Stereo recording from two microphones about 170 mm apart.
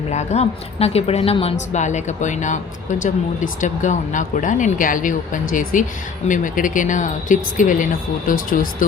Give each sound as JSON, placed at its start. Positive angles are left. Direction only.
{"t": 0.1, "sound": "a woman's voice", "side_deg": 40}
{"t": 3.6, "sound": "a woman's voice", "side_deg": 45}